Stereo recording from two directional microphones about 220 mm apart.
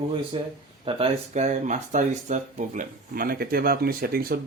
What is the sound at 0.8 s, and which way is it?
Speech, 30° right (ahead or behind).